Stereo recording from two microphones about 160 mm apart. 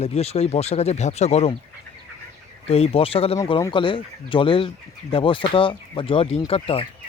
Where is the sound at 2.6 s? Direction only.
40° left (ahead or behind).